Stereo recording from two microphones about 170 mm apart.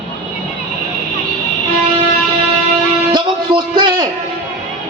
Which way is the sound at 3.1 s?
25° right (ahead or behind).